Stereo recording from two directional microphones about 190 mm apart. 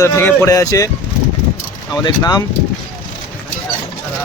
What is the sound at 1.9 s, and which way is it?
Speech, 20° left (ahead or behind).